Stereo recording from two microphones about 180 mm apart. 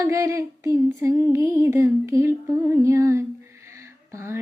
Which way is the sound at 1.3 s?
15° right (ahead or behind).